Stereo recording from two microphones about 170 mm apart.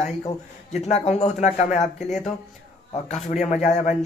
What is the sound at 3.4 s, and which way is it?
Speech, 40° left (ahead or behind).